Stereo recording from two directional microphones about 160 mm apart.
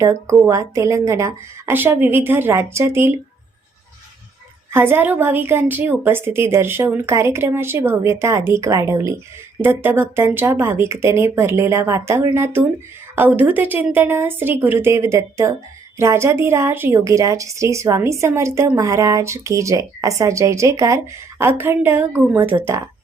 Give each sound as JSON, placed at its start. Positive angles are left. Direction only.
{"t": 0.0, "sound": "a woman's voice", "side_deg": -15}
{"t": 4.7, "sound": "a woman's voice", "side_deg": -15}